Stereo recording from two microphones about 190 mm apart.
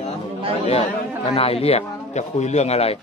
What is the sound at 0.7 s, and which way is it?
A man's voice, 30° left (ahead or behind).